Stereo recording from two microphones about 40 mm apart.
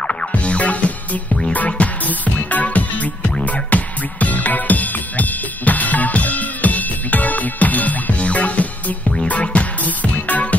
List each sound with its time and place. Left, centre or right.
0.3 s music: left
9.0 s music: centre
9.3 s music: left